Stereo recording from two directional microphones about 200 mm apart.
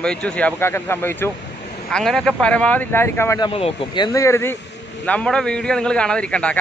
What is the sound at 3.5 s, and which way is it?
A man's voice, 30° left (ahead or behind).